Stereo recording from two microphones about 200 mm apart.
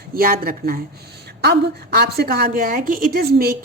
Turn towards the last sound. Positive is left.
turn(degrees=-50)  # may be behind; listen again after turning